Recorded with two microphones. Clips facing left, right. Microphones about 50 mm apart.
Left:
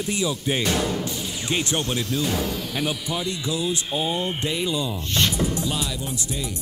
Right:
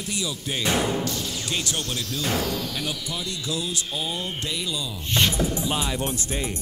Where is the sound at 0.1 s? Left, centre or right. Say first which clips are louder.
Left 4 dB; left.